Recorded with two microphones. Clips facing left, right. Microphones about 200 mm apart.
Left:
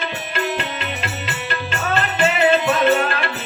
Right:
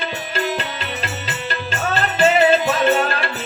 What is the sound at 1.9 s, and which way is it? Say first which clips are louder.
Music: right 4 dB; 35° right (ahead or behind).